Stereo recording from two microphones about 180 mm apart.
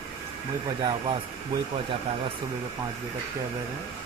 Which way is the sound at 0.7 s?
25° right (ahead or behind).